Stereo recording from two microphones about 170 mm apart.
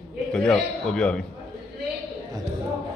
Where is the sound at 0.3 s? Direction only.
5° left (ahead or behind).